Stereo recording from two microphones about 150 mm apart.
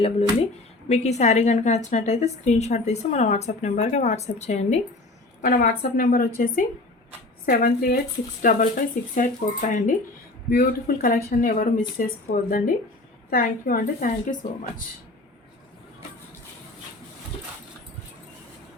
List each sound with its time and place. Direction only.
0.9 s a woman's voice: 50° left (ahead or behind)
5.4 s speech: 65° left (ahead or behind)
10.5 s speech: 80° left; by 14.8 s 65° left (ahead or behind)